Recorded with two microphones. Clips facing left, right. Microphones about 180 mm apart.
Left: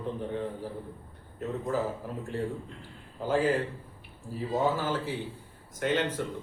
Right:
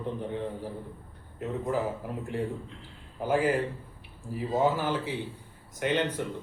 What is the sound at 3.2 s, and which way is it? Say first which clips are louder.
A man's voice: right 1 dB; 15° right (ahead or behind).